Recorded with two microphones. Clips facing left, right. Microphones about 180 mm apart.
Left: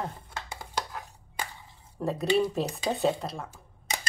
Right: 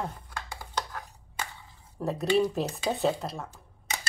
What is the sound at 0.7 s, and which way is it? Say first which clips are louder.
Dishes: even; 10° left (ahead or behind).